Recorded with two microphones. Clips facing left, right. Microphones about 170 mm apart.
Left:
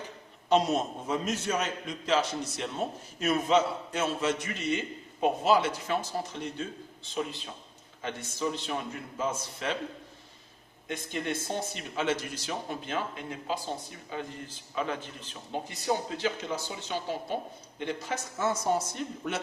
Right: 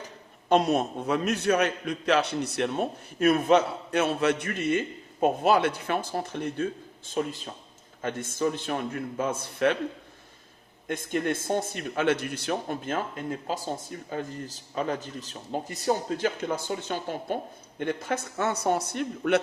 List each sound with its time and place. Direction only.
0.4 s a man's voice: 55° right (ahead or behind)
10.8 s a man's voice: 50° right (ahead or behind)